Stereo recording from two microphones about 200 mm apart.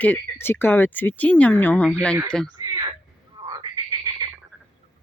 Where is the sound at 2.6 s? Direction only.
20° right (ahead or behind).